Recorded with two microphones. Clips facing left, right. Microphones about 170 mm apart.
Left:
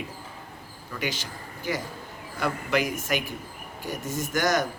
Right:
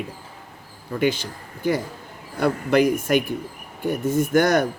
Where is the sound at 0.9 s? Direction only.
50° right (ahead or behind).